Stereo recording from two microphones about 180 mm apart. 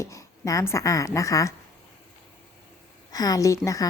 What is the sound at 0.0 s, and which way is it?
A woman's voice, 15° left (ahead or behind).